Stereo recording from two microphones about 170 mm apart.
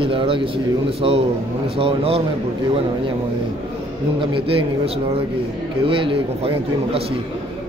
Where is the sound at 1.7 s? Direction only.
35° right (ahead or behind).